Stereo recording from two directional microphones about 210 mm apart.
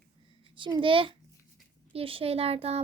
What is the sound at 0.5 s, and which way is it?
A child's voice, 25° right (ahead or behind).